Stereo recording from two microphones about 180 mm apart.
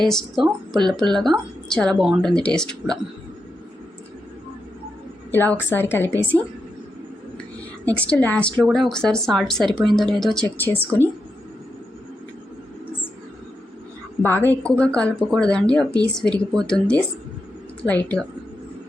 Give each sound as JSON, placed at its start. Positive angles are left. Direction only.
{"t": 0.1, "sound": "a woman's voice", "side_deg": 0}
{"t": 5.3, "sound": "speech", "side_deg": 10}
{"t": 7.9, "sound": "a woman's voice", "side_deg": 5}
{"t": 14.2, "sound": "a woman's voice", "side_deg": 10}